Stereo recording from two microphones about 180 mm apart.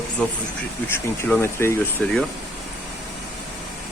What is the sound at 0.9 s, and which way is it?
Speech, 10° left (ahead or behind).